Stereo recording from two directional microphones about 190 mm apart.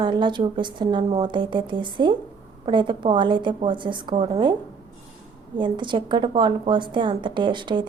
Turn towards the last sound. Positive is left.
turn(degrees=-25)  # may be behind; listen again after turning